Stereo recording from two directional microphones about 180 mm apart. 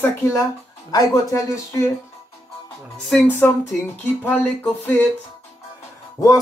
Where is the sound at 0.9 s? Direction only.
20° left (ahead or behind).